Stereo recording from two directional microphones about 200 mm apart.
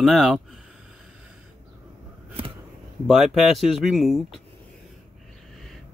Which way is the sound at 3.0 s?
Centre (ahead or behind).